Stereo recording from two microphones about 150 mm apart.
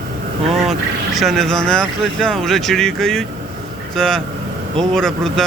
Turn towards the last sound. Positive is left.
turn(degrees=5)  # may be behind; listen again after turning